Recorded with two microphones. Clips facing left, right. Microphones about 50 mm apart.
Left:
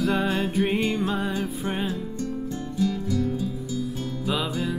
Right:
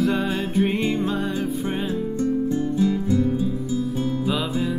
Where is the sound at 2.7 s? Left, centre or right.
Right.